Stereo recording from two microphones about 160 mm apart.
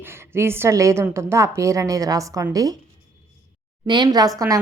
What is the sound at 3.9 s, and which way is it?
Speech, 25° right (ahead or behind).